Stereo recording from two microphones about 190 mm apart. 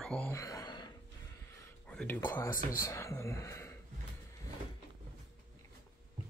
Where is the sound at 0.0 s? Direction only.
5° left (ahead or behind).